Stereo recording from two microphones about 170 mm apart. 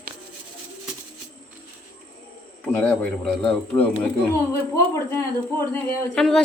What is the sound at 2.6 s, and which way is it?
Speech, 5° left (ahead or behind).